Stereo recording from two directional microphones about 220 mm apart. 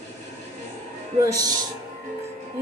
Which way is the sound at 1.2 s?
15° right (ahead or behind).